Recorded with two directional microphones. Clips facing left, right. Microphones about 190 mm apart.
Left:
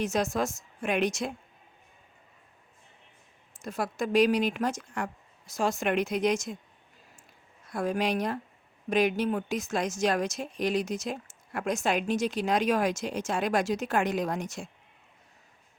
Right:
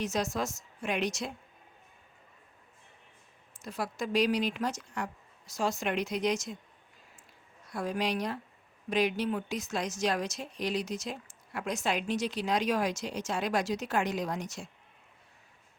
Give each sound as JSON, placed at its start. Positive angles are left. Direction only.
{"t": 0.0, "sound": "speech", "side_deg": 50}
{"t": 3.6, "sound": "speech", "side_deg": 50}
{"t": 7.7, "sound": "speech", "side_deg": 50}